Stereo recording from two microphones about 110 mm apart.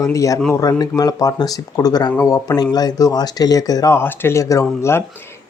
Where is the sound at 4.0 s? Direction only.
20° left (ahead or behind).